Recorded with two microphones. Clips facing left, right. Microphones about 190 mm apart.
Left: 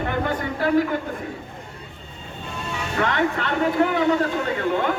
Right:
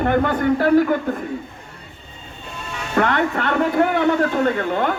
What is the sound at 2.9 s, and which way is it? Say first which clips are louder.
A man's voice: right 4 dB; 50° right (ahead or behind).